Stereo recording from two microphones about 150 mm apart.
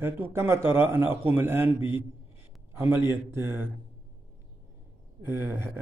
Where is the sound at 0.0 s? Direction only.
15° right (ahead or behind).